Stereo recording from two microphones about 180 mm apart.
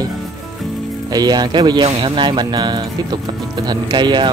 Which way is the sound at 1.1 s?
20° right (ahead or behind).